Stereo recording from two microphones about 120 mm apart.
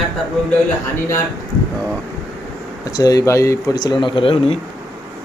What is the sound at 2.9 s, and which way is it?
Speech, 30° left (ahead or behind).